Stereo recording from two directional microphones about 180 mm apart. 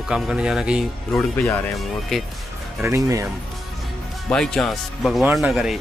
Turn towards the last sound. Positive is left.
turn(degrees=-5)  # may be behind; listen again after turning